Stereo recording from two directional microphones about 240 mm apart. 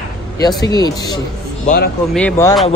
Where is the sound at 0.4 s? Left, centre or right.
Centre.